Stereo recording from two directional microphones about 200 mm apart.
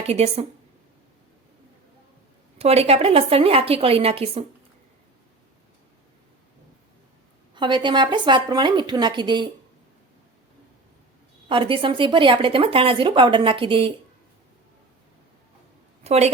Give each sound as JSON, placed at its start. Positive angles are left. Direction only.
{"t": 0.1, "sound": "a woman's voice", "side_deg": -30}
{"t": 2.6, "sound": "speech", "side_deg": -30}
{"t": 7.5, "sound": "speech", "side_deg": -25}
{"t": 11.4, "sound": "speech", "side_deg": -25}
{"t": 16.0, "sound": "a woman's voice", "side_deg": -35}